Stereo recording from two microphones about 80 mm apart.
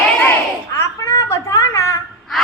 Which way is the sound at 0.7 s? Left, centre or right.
Left.